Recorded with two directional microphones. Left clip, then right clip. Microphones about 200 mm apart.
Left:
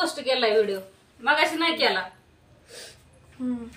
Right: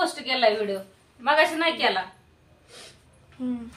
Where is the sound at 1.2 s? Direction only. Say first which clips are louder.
Right 1 dB; centre (ahead or behind).